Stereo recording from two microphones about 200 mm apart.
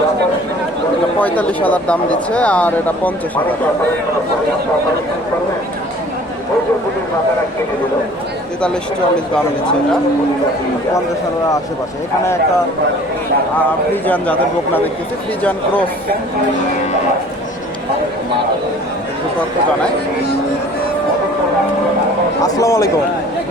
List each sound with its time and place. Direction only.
1.2 s speech: 10° left (ahead or behind)
13.9 s speech: 10° left (ahead or behind)
15.4 s speech: 10° left (ahead or behind)
22.4 s speech: 15° left (ahead or behind)